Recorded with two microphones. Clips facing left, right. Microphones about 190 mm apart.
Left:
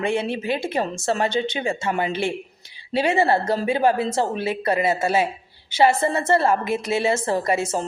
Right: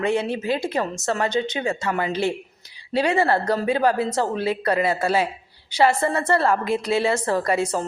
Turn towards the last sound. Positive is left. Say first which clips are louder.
# even
turn(degrees=25)  # may be behind; listen again after turning